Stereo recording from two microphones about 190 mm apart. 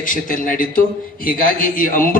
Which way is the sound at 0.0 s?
45° left (ahead or behind).